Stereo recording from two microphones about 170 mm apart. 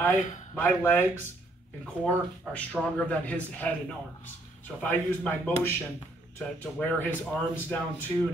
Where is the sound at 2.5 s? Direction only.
10° left (ahead or behind).